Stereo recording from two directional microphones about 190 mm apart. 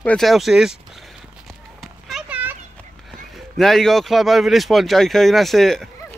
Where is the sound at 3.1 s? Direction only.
Centre (ahead or behind).